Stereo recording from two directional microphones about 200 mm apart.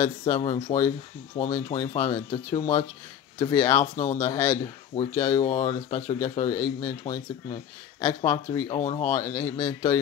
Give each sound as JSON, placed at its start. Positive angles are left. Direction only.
{"t": 0.0, "sound": "speech", "side_deg": 20}